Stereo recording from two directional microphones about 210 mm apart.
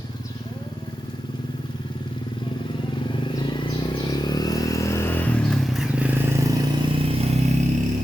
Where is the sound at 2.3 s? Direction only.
20° left (ahead or behind); by 6.1 s centre (ahead or behind).